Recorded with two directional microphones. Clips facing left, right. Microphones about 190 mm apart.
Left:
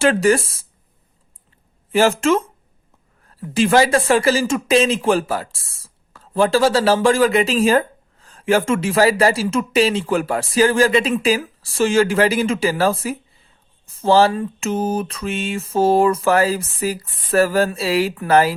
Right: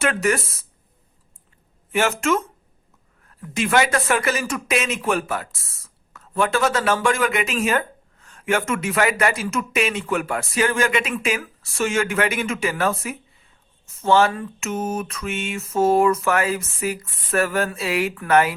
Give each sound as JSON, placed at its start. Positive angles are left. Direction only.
{"t": 0.0, "sound": "speech", "side_deg": 30}
{"t": 1.9, "sound": "speech", "side_deg": 30}